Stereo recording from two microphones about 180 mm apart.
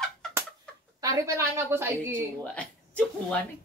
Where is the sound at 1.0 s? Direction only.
20° right (ahead or behind).